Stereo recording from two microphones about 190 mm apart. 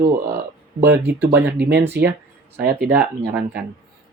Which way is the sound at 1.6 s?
60° right (ahead or behind).